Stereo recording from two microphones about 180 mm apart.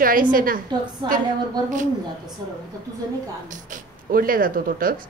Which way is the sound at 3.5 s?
50° right (ahead or behind).